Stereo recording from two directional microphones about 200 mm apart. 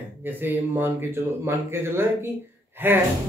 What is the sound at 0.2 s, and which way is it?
A man's voice, 10° right (ahead or behind).